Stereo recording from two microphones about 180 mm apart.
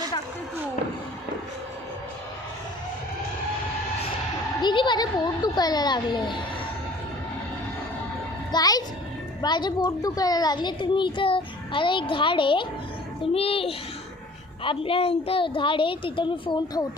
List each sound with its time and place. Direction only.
4.6 s a woman's voice: 25° left (ahead or behind)
8.5 s music: 20° left (ahead or behind)
9.4 s a child's voice: 25° left (ahead or behind)